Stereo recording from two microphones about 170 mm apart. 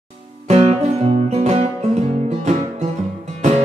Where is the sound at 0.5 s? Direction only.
35° right (ahead or behind).